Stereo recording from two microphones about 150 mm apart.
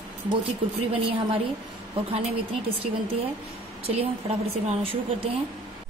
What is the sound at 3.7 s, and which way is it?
A woman's voice, 40° right (ahead or behind).